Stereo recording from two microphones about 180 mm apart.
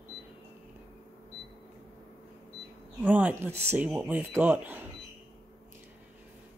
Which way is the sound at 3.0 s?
10° right (ahead or behind).